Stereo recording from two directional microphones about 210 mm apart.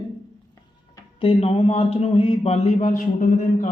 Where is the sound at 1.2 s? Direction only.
25° left (ahead or behind).